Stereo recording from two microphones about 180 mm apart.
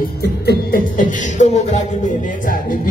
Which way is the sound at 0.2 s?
60° left (ahead or behind).